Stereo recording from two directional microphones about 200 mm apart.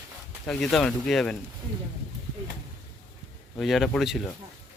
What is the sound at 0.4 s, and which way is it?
Speech, centre (ahead or behind).